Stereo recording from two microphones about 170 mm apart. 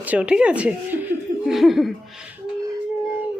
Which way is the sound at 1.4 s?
Centre (ahead or behind).